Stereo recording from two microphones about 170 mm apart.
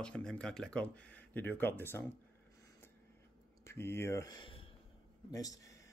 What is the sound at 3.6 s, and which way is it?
Speech, 15° left (ahead or behind).